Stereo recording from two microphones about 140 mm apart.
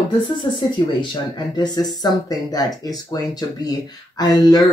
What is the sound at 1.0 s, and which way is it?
Speech, 30° left (ahead or behind).